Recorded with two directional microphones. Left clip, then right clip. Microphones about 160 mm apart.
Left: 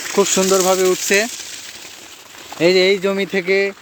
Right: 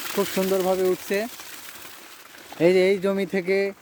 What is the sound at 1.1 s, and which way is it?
Speech, centre (ahead or behind).